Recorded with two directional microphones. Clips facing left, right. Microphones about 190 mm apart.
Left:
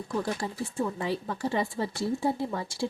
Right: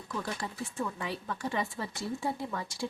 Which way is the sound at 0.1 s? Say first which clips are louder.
Left 5 dB; 30° left (ahead or behind).